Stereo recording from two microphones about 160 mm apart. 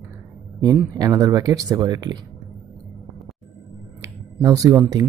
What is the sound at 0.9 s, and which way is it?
Speech, 25° right (ahead or behind).